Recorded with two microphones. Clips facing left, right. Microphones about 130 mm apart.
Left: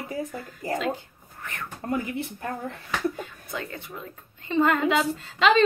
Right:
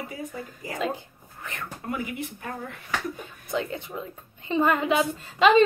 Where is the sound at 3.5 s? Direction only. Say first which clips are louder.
Right 9 dB; 20° right (ahead or behind).